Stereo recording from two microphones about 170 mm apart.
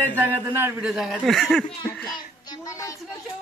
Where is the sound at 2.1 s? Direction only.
20° left (ahead or behind).